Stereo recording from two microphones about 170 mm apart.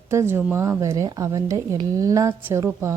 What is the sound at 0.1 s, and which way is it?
Speech, 15° right (ahead or behind).